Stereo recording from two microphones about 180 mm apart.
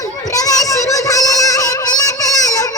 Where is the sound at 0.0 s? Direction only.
20° left (ahead or behind).